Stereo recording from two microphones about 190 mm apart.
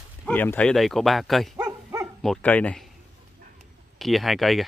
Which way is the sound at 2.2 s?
5° left (ahead or behind).